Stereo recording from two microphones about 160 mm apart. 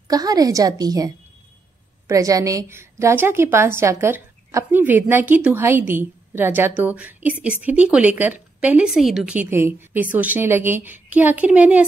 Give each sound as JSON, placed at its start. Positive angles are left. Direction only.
{"t": 0.1, "sound": "a woman's voice", "side_deg": -25}